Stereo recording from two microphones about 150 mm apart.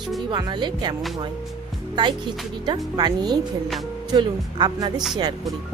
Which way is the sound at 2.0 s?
30° right (ahead or behind).